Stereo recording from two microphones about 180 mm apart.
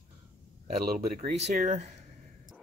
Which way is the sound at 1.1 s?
35° right (ahead or behind).